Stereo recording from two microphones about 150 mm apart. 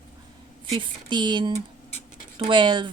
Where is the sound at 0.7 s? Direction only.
30° right (ahead or behind).